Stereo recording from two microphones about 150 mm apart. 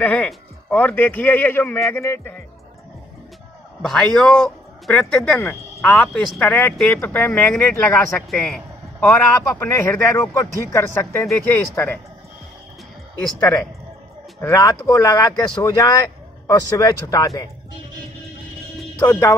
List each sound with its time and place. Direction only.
0.0 s speech: 10° left (ahead or behind)
3.8 s speech: 5° left (ahead or behind)
14.4 s speech: 20° left (ahead or behind)
18.9 s speech: 20° left (ahead or behind)